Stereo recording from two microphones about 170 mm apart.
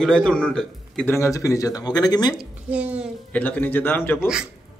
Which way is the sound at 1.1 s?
15° left (ahead or behind).